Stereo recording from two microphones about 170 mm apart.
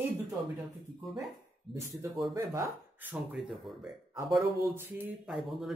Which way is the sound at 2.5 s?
15° right (ahead or behind).